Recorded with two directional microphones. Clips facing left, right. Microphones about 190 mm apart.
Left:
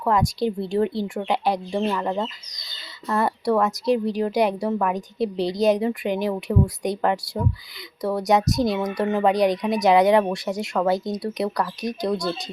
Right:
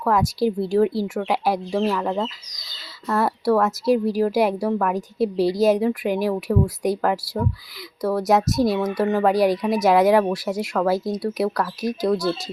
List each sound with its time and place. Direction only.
0.1 s a woman's voice: 5° right (ahead or behind)